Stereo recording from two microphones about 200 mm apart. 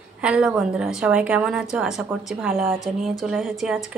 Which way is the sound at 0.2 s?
5° right (ahead or behind).